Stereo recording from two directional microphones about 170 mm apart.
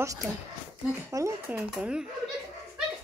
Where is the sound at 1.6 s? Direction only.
5° right (ahead or behind).